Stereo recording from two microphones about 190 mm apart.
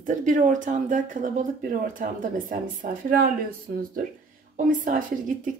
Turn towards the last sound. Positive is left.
turn(degrees=-45)  # may be behind; listen again after turning